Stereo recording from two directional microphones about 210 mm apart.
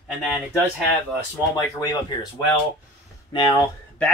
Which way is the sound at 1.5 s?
15° left (ahead or behind).